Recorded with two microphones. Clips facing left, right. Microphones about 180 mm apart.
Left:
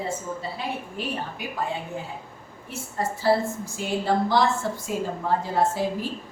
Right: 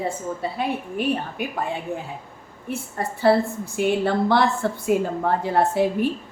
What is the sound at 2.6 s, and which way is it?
A woman's voice, 60° right (ahead or behind).